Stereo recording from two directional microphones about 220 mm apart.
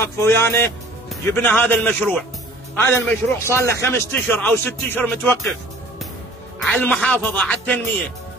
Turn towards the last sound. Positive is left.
turn(degrees=5)  # may be behind; listen again after turning